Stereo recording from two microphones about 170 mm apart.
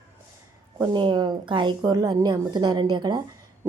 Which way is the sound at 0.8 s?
25° right (ahead or behind).